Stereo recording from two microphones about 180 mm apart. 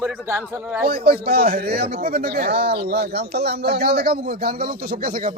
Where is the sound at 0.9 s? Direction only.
60° right (ahead or behind).